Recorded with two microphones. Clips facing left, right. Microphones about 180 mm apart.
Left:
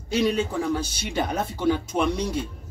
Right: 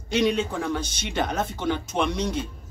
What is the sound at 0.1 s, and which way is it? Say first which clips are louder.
Speech: even; 5° left (ahead or behind).